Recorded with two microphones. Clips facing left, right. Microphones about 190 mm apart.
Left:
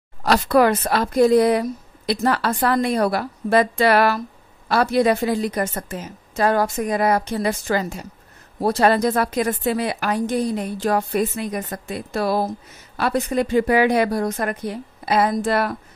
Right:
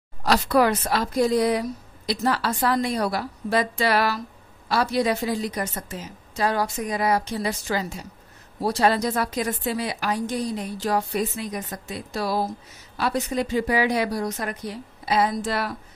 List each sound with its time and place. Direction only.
0.2 s a woman's voice: 55° left (ahead or behind)